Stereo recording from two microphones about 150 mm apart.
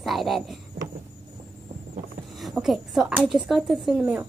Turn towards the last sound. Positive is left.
turn(degrees=-5)  # may be behind; listen again after turning